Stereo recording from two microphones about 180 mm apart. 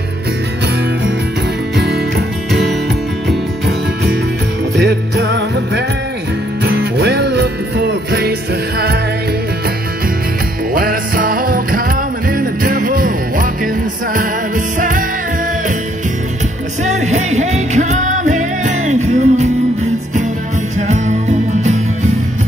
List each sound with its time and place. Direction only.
1.8 s music: 65° right (ahead or behind)
4.7 s jingle bell: 65° right (ahead or behind)
6.6 s music: 65° right (ahead or behind)
10.7 s music: 55° right (ahead or behind)
14.8 s music: 45° right (ahead or behind)
16.8 s music: 40° right (ahead or behind)